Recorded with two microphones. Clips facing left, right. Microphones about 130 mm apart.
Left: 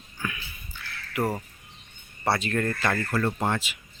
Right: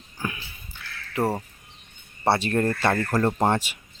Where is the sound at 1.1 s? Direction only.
30° right (ahead or behind).